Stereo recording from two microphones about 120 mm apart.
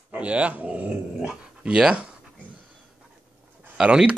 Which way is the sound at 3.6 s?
10° right (ahead or behind).